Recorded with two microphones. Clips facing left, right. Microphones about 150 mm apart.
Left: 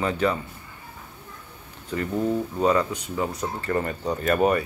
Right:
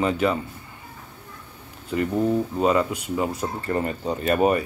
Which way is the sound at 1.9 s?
20° right (ahead or behind).